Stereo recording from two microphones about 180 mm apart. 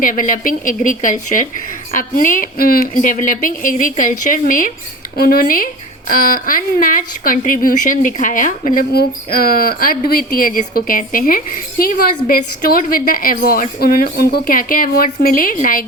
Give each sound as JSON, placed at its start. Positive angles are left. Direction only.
{"t": 0.0, "sound": "speech", "side_deg": 50}